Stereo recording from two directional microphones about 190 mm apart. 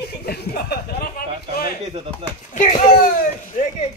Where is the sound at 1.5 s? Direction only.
55° left (ahead or behind).